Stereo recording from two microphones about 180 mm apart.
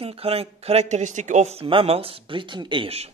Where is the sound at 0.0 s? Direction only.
30° right (ahead or behind).